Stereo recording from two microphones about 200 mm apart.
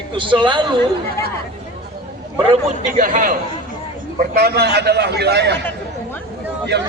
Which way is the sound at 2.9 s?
40° right (ahead or behind).